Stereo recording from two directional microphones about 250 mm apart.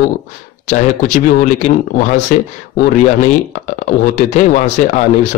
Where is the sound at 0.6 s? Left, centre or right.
Left.